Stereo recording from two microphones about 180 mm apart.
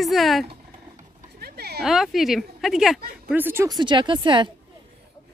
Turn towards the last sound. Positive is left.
turn(degrees=-25)  # may be behind; listen again after turning